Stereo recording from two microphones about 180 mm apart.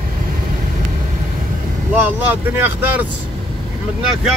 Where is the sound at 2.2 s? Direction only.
10° right (ahead or behind).